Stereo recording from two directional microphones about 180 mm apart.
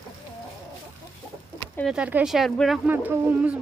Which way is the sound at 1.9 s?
5° right (ahead or behind).